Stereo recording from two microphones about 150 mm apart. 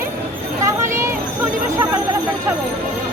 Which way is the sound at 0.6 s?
20° right (ahead or behind).